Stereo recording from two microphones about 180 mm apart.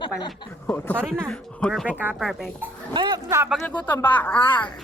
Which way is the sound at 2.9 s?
25° right (ahead or behind).